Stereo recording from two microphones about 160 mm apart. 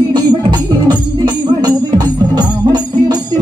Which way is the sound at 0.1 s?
25° right (ahead or behind).